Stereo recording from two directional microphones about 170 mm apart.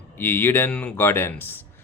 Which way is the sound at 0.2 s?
10° left (ahead or behind).